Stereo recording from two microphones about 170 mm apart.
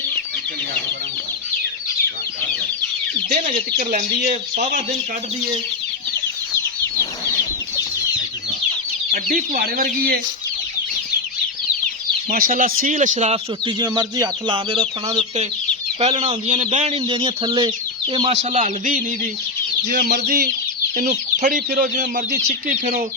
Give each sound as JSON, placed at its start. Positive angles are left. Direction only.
{"t": 3.2, "sound": "speech", "side_deg": -45}
{"t": 3.8, "sound": "speech", "side_deg": -65}
{"t": 4.3, "sound": "speech", "side_deg": -45}
{"t": 6.8, "sound": "chicken", "side_deg": 20}
{"t": 9.3, "sound": "speech", "side_deg": -60}
{"t": 12.3, "sound": "speech", "side_deg": -55}
{"t": 13.7, "sound": "speech", "side_deg": -25}
{"t": 16.0, "sound": "speech", "side_deg": -40}
{"t": 18.5, "sound": "speech", "side_deg": -50}
{"t": 19.9, "sound": "speech", "side_deg": -65}